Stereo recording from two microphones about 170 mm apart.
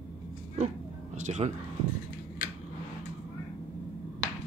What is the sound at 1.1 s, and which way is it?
Speech, 45° right (ahead or behind).